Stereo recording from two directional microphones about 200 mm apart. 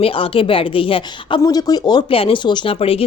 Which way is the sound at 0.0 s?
25° left (ahead or behind).